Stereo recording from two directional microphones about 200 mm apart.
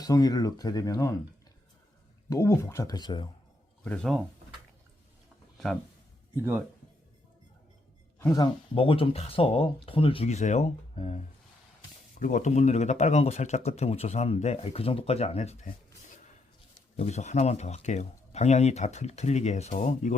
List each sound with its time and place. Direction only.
0.0 s speech: 20° left (ahead or behind)
2.3 s speech: 15° left (ahead or behind)
3.8 s speech: 5° left (ahead or behind)
6.3 s speech: 10° right (ahead or behind)
8.2 s speech: 20° left (ahead or behind)
12.2 s speech: 40° left (ahead or behind)
17.0 s speech: 35° left (ahead or behind)